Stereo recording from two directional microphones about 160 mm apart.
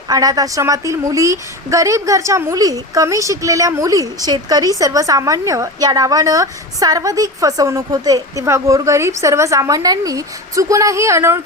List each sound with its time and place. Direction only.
0.1 s a woman's voice: 25° right (ahead or behind)